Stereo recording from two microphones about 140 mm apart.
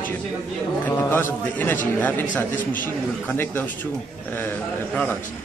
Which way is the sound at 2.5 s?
70° left (ahead or behind).